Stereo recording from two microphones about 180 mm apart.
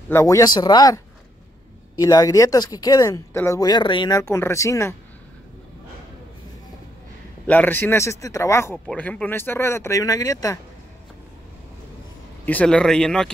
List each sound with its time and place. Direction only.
0.1 s speech: 15° left (ahead or behind)
7.4 s speech: 10° left (ahead or behind)
12.4 s speech: 5° left (ahead or behind)